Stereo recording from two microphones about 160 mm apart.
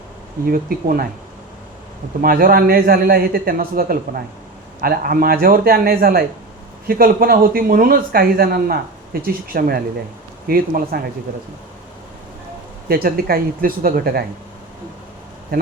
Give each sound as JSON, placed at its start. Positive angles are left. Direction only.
{"t": 0.4, "sound": "speech", "side_deg": -65}
{"t": 2.2, "sound": "speech", "side_deg": -65}
{"t": 12.9, "sound": "speech", "side_deg": -70}